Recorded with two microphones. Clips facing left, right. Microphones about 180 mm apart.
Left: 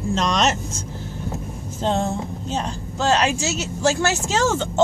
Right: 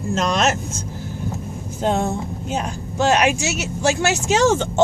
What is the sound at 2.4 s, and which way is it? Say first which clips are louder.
Speech: right 2 dB; 10° right (ahead or behind).